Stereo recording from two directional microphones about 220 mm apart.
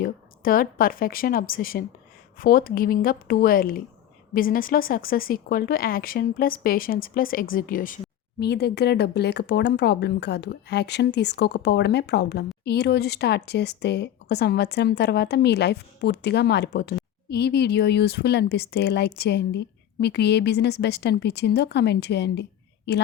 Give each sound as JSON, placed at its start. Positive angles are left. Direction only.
{"t": 0.0, "sound": "speech", "side_deg": 40}
{"t": 8.4, "sound": "speech", "side_deg": 50}